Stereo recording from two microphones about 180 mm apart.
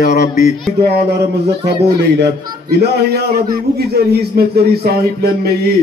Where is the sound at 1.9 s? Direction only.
70° right (ahead or behind).